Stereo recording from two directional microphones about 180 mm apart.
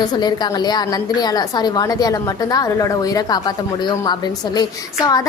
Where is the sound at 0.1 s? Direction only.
25° left (ahead or behind).